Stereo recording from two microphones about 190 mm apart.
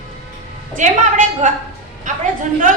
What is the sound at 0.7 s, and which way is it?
A woman's voice, 40° right (ahead or behind).